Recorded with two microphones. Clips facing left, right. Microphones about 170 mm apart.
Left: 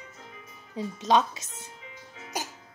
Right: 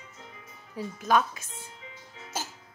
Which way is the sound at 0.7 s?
20° left (ahead or behind).